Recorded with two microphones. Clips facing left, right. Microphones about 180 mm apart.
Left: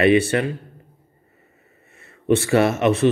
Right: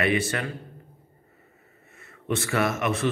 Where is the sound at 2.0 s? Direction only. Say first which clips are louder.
Left 10 dB; 25° left (ahead or behind).